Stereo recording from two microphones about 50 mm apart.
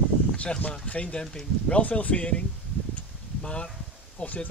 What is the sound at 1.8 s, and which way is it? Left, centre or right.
Speech, left.